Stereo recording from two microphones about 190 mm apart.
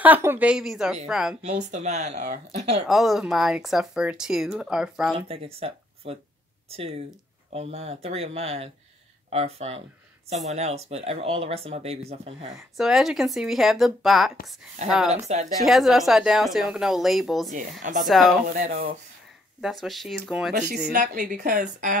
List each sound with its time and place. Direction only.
0.0 s a woman's voice: 10° right (ahead or behind)
1.4 s speech: 35° right (ahead or behind)
2.9 s speech: centre (ahead or behind)
5.3 s speech: 30° right (ahead or behind)
12.7 s speech: centre (ahead or behind)
15.1 s speech: 35° right (ahead or behind)
15.6 s speech: centre (ahead or behind)
17.5 s a woman's voice: 45° right (ahead or behind)
18.0 s speech: centre (ahead or behind)
18.5 s a woman's voice: 45° right (ahead or behind)
19.6 s speech: centre (ahead or behind)
20.9 s a woman's voice: 50° right (ahead or behind)